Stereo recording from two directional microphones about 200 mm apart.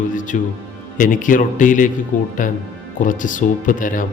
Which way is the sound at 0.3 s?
45° left (ahead or behind).